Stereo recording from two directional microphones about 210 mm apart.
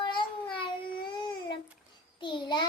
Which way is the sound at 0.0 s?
25° left (ahead or behind).